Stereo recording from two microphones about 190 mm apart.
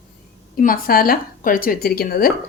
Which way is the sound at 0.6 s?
50° left (ahead or behind).